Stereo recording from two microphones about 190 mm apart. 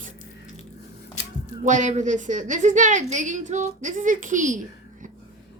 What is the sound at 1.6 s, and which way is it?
A woman's voice, 40° right (ahead or behind).